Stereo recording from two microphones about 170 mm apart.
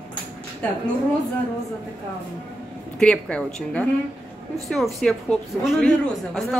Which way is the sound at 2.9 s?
5° left (ahead or behind).